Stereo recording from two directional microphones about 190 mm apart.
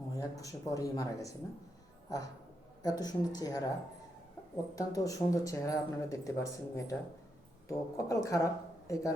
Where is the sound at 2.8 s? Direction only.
20° left (ahead or behind).